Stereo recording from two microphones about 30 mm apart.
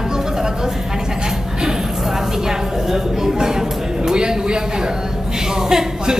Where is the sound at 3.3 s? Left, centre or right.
Centre.